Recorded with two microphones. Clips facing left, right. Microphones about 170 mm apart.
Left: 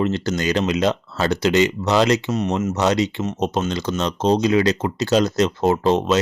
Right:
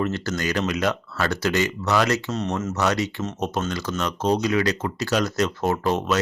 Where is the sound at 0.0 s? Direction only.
20° left (ahead or behind).